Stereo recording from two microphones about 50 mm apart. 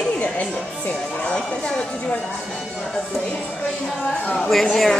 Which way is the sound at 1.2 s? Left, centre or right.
Centre.